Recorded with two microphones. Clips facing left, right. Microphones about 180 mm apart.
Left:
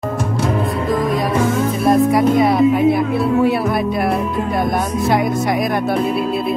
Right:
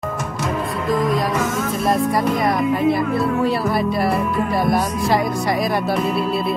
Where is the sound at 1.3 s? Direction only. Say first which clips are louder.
Left 5 dB; 30° left (ahead or behind).